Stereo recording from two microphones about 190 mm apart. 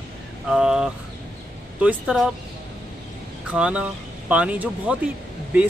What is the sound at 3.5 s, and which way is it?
Speech, 5° right (ahead or behind).